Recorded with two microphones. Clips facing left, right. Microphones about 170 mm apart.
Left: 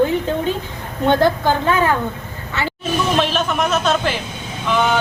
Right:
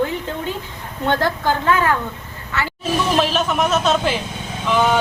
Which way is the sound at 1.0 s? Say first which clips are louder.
Left 4 dB; 20° left (ahead or behind).